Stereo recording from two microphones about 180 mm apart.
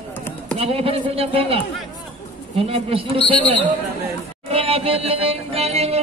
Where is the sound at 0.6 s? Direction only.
35° right (ahead or behind).